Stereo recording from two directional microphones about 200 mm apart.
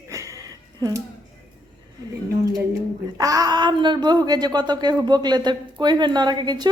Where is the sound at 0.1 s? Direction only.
15° right (ahead or behind).